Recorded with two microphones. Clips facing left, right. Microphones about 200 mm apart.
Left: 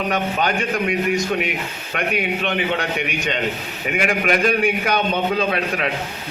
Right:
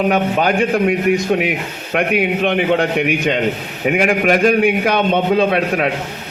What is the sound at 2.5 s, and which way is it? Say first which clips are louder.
Speech: right 8 dB; 50° right (ahead or behind).